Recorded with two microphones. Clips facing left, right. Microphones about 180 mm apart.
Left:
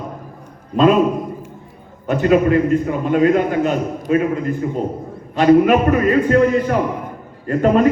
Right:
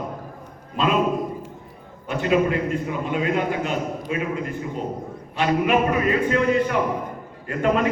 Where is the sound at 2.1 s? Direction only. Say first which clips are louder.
Left 6 dB; 45° left (ahead or behind).